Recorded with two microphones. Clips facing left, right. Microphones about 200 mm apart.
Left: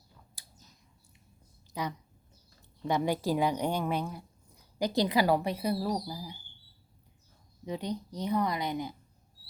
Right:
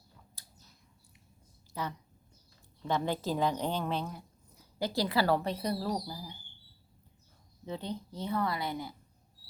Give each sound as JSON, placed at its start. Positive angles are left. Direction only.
{"t": 0.4, "sound": "a sound", "side_deg": 15}
{"t": 1.7, "sound": "speech", "side_deg": 15}
{"t": 7.6, "sound": "speech", "side_deg": 15}